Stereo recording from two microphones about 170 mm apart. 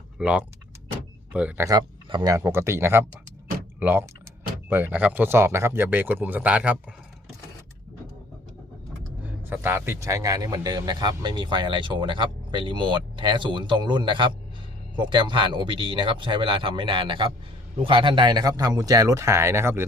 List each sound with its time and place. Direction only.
0.2 s speech: 5° right (ahead or behind)
1.6 s speech: 25° right (ahead or behind); by 6.7 s 10° right (ahead or behind)
9.2 s a man's voice: 10° right (ahead or behind)